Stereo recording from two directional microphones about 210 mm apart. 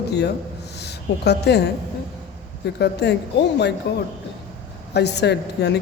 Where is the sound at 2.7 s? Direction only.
55° left (ahead or behind).